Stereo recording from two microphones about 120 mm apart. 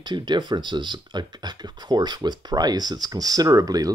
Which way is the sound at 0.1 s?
40° right (ahead or behind).